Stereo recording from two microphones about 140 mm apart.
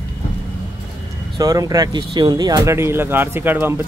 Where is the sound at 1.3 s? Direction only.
25° right (ahead or behind).